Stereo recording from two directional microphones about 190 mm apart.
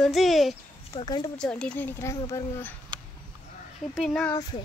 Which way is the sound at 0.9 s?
20° left (ahead or behind).